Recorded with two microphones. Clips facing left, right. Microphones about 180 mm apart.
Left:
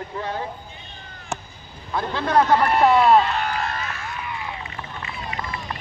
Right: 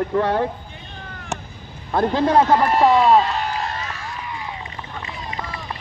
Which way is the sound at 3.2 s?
35° right (ahead or behind).